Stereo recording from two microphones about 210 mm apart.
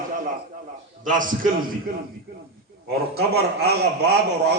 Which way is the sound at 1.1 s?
40° right (ahead or behind).